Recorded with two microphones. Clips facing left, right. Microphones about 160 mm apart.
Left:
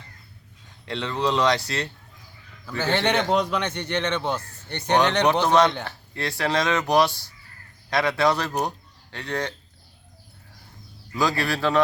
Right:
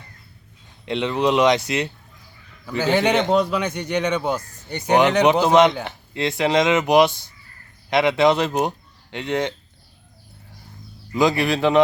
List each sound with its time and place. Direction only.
0.9 s a man's voice: 20° right (ahead or behind)
11.1 s speech: 20° right (ahead or behind)